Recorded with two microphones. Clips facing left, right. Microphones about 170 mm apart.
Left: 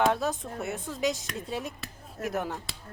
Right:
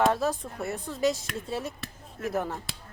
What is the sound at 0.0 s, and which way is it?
Speech, centre (ahead or behind).